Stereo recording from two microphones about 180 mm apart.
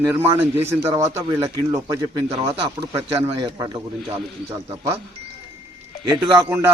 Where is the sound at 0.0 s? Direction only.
15° right (ahead or behind).